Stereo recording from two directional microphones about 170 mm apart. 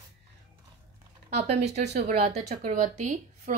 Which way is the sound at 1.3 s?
40° right (ahead or behind).